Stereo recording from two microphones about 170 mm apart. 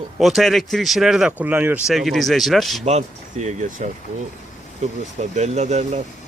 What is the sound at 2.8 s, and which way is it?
Speech, 40° right (ahead or behind).